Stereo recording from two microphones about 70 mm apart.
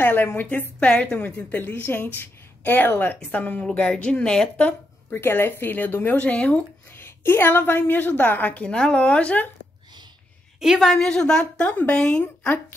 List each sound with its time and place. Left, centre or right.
0.0 s a woman's voice: left
1.2 s a woman's voice: left
3.6 s a woman's voice: centre
4.6 s a woman's voice: left
7.0 s a woman's voice: left
10.6 s a woman's voice: centre